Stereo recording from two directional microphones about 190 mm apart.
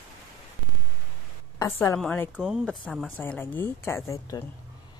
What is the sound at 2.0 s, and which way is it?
Speech, 5° left (ahead or behind).